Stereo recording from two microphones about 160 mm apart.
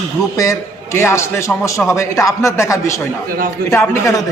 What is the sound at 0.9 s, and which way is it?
A man's voice, 15° left (ahead or behind).